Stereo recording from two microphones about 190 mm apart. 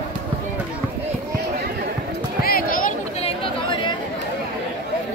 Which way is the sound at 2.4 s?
50° left (ahead or behind).